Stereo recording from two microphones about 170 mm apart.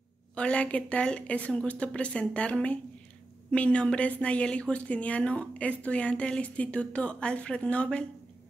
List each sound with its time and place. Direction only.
0.4 s a woman's voice: 5° left (ahead or behind)